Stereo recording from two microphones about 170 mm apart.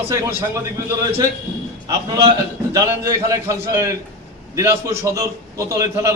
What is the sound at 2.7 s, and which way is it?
A man's voice, 20° right (ahead or behind).